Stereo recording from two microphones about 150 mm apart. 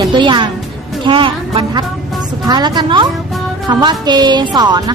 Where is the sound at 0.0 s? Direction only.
30° right (ahead or behind).